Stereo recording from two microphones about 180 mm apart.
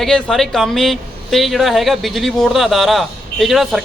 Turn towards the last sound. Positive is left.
turn(degrees=0)  # may be behind; listen again after turning